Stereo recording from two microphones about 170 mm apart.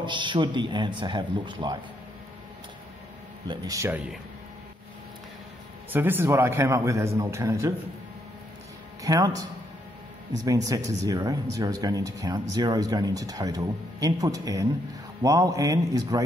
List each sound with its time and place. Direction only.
0.0 s speech: 25° right (ahead or behind)
3.4 s a man's voice: 20° right (ahead or behind)
5.9 s a man's voice: 10° right (ahead or behind)
9.0 s speech: 20° right (ahead or behind)